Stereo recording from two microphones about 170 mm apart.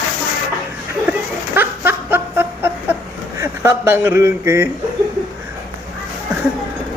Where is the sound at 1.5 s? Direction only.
10° right (ahead or behind).